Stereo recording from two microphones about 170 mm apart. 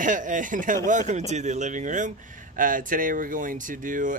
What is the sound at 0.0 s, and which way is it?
A man's voice, 50° right (ahead or behind).